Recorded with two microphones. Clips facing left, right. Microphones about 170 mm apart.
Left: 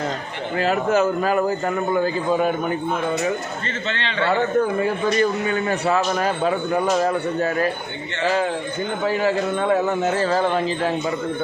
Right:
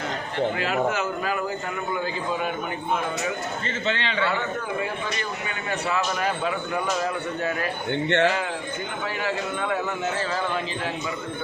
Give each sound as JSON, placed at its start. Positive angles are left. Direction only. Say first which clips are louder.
{"t": 0.6, "sound": "a man's voice", "louder": "left 6 dB", "side_deg": 40}
{"t": 3.8, "sound": "a man's voice", "louder": "right 2 dB", "side_deg": -10}
{"t": 4.8, "sound": "a man's voice", "louder": "left 10 dB", "side_deg": 40}
{"t": 9.0, "sound": "a man's voice", "louder": "left 9 dB", "side_deg": 35}